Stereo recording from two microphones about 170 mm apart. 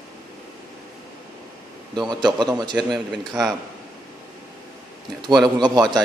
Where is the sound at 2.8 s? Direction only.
Centre (ahead or behind).